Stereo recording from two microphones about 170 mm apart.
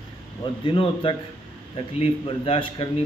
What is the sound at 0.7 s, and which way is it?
A man's voice, 30° left (ahead or behind).